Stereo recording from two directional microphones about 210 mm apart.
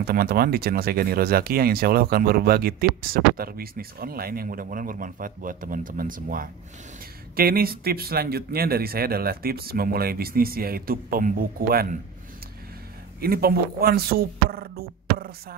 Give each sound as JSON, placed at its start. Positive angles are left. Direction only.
{"t": 0.0, "sound": "speech", "side_deg": -45}
{"t": 13.2, "sound": "speech", "side_deg": -45}